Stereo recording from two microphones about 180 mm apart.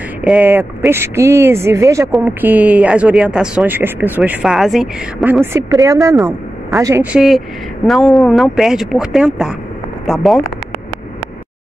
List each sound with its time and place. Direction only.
0.2 s a woman's voice: 10° right (ahead or behind)